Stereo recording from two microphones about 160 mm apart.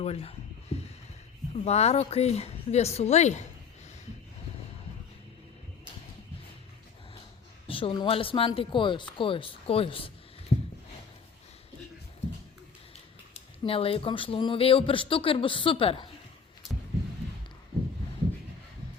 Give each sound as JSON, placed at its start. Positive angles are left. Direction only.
{"t": 0.0, "sound": "a sound", "side_deg": 40}
{"t": 1.5, "sound": "speech", "side_deg": 40}
{"t": 7.7, "sound": "speech", "side_deg": 35}
{"t": 13.3, "sound": "speech", "side_deg": 35}